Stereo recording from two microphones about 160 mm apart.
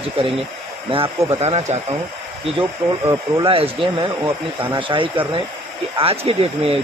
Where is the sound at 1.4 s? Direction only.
45° right (ahead or behind).